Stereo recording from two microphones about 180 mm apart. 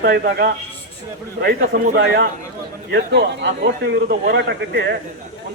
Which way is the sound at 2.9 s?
70° right (ahead or behind).